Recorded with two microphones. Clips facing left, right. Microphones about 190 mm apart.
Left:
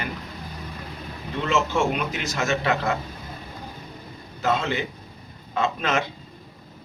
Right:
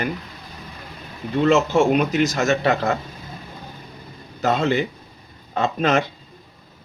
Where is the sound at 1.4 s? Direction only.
40° right (ahead or behind).